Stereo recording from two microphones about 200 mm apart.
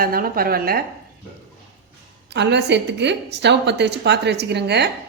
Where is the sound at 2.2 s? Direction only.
60° right (ahead or behind).